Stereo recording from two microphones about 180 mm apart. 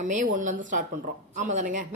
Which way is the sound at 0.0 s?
45° right (ahead or behind).